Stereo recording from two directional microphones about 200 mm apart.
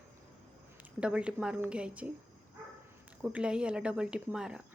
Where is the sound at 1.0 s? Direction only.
5° right (ahead or behind).